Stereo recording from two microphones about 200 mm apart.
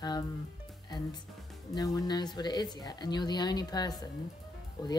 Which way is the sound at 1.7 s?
20° left (ahead or behind).